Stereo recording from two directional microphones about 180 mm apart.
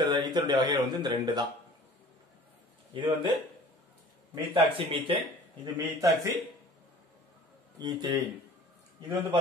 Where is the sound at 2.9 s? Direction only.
30° right (ahead or behind).